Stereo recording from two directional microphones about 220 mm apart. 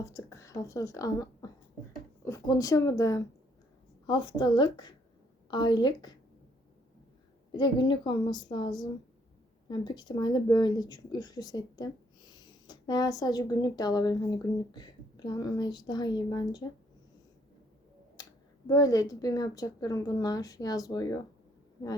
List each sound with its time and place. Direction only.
0.0 s a woman's voice: 15° left (ahead or behind)
7.5 s speech: 20° left (ahead or behind)
18.2 s clicking: 15° left (ahead or behind)
18.7 s a woman's voice: 15° left (ahead or behind)